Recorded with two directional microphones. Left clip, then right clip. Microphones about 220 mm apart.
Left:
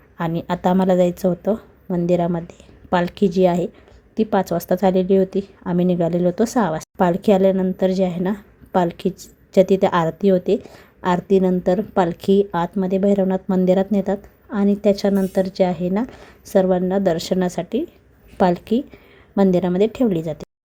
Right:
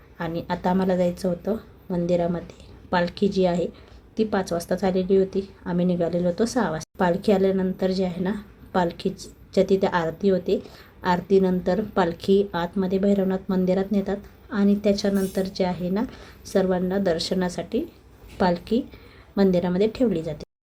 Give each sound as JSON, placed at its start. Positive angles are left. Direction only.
{"t": 0.2, "sound": "a woman's voice", "side_deg": 35}